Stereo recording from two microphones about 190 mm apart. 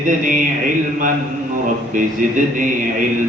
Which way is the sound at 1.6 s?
45° right (ahead or behind).